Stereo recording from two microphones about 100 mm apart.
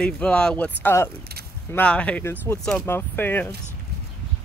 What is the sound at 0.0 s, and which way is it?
Speech, 10° left (ahead or behind).